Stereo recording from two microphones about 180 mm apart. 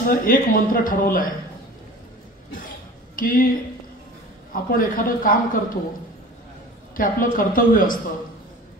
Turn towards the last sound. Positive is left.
turn(degrees=50)  # may be behind; listen again after turning